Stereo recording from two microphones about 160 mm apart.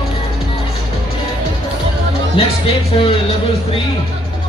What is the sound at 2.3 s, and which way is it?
Speech, 35° left (ahead or behind).